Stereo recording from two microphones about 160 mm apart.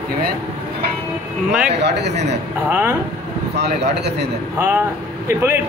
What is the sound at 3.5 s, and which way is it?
Speech, 90° right.